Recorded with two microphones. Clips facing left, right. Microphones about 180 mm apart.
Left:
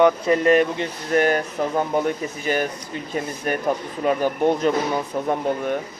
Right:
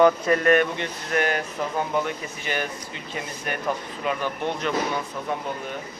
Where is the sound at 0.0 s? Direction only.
20° left (ahead or behind); by 5.3 s 45° left (ahead or behind).